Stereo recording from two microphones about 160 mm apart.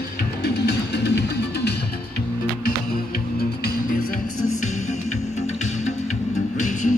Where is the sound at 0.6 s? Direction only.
90° left.